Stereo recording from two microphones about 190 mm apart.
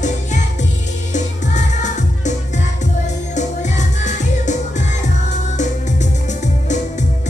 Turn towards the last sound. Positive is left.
turn(degrees=40)  # may be behind; listen again after turning